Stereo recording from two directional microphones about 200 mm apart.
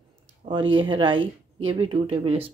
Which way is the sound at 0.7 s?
25° right (ahead or behind).